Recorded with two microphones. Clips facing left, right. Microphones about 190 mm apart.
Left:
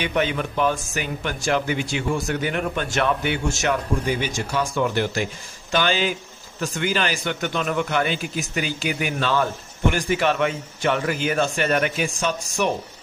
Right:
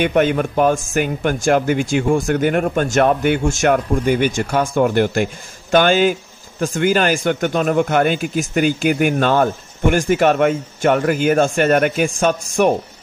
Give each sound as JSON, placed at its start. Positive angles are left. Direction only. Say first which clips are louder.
{"t": 0.0, "sound": "a man's voice", "louder": "right 8 dB", "side_deg": -50}